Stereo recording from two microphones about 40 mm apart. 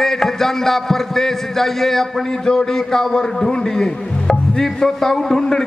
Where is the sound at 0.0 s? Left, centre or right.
Centre.